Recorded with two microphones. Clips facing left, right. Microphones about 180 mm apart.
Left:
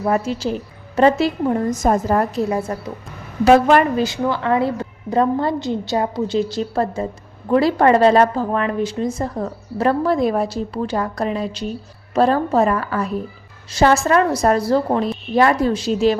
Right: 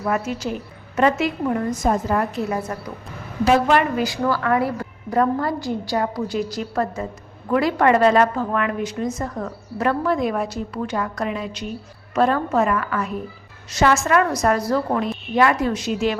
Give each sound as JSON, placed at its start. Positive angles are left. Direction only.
{"t": 0.0, "sound": "a woman's voice", "side_deg": 30}
{"t": 1.7, "sound": "a woman's voice", "side_deg": 45}
{"t": 3.9, "sound": "a woman's voice", "side_deg": 25}